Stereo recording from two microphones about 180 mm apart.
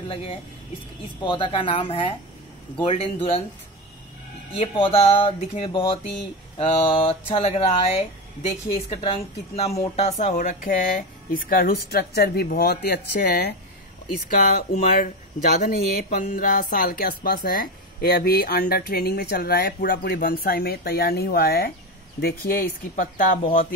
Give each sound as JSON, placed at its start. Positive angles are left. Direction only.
{"t": 0.1, "sound": "speech", "side_deg": 30}
{"t": 4.6, "sound": "speech", "side_deg": 30}
{"t": 22.9, "sound": "speech", "side_deg": 45}